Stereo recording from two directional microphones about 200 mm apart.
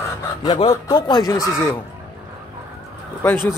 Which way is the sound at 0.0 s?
20° left (ahead or behind).